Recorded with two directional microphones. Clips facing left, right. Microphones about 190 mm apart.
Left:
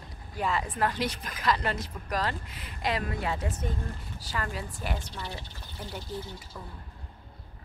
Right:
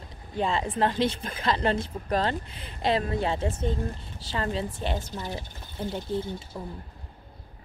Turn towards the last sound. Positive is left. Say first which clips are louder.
# right 7 dB
turn(degrees=-25)  # may be behind; listen again after turning